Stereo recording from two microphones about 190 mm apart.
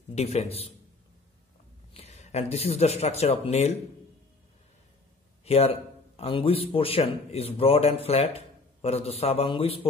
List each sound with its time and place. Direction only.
0.1 s a man's voice: 35° left (ahead or behind)
2.0 s speech: 35° left (ahead or behind)
5.4 s a man's voice: 30° left (ahead or behind)